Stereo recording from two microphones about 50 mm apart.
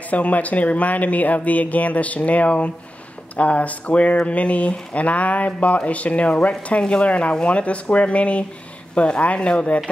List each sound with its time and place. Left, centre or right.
0.1 s speech: left